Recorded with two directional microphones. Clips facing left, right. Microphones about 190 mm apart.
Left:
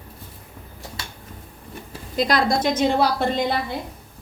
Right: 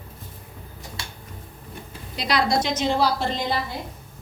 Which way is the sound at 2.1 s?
50° left (ahead or behind).